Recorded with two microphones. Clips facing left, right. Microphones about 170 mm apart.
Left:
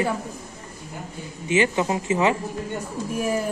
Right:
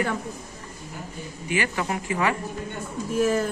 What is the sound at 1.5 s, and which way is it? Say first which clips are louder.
Speech: left 6 dB; 20° left (ahead or behind).